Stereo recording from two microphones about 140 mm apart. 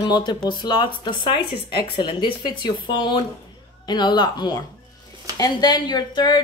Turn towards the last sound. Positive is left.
turn(degrees=30)  # may be behind; listen again after turning